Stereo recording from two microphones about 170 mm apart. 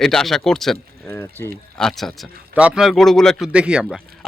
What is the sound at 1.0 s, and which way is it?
Speech, 15° left (ahead or behind).